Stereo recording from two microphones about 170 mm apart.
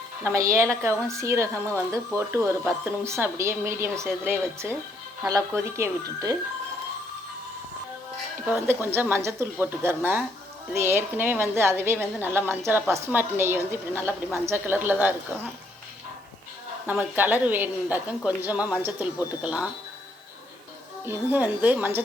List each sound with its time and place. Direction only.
0.3 s a woman's voice: 15° right (ahead or behind)
0.9 s a woman's voice: 5° left (ahead or behind)
1.2 s a woman's voice: 15° right (ahead or behind)
8.6 s a woman's voice: 10° right (ahead or behind)
16.8 s a woman's voice: 10° right (ahead or behind)
21.1 s a woman's voice: 10° right (ahead or behind)